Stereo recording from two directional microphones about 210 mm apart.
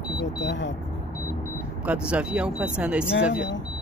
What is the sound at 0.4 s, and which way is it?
Speech, 60° left (ahead or behind).